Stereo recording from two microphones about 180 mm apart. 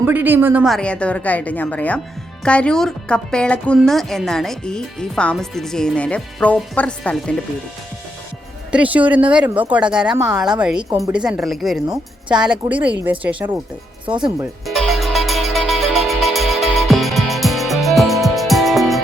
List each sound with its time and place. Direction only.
0.0 s a woman's voice: 10° right (ahead or behind); by 7.3 s 5° left (ahead or behind)
8.7 s a woman's voice: 10° right (ahead or behind)
10.8 s a woman's voice: 15° right (ahead or behind)
11.1 s a woman's voice: 5° right (ahead or behind)
14.2 s speech: 25° right (ahead or behind)
14.8 s music: centre (ahead or behind)